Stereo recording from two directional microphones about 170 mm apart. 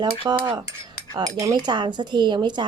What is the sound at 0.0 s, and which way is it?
A woman's voice, 25° right (ahead or behind).